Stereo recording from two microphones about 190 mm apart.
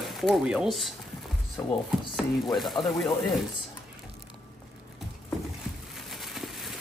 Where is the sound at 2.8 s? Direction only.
25° left (ahead or behind).